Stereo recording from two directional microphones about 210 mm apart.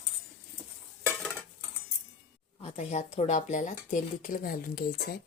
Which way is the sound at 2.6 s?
30° left (ahead or behind).